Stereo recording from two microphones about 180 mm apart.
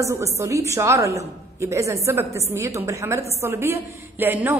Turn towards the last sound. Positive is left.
turn(degrees=-10)  # may be behind; listen again after turning